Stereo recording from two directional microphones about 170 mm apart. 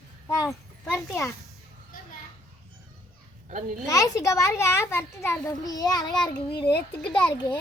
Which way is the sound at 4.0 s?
20° left (ahead or behind).